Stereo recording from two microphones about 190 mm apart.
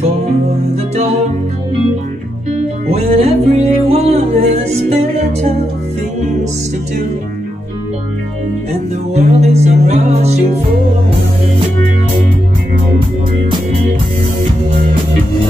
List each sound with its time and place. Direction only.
2.5 s music: 35° right (ahead or behind)
9.1 s music: 35° right (ahead or behind)